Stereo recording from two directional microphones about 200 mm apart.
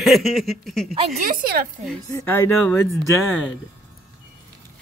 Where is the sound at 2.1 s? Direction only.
15° left (ahead or behind).